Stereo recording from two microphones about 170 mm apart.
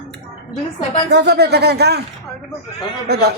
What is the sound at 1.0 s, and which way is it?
Speech, 80° right.